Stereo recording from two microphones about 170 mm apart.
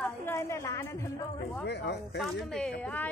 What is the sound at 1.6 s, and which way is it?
Speech, 80° left.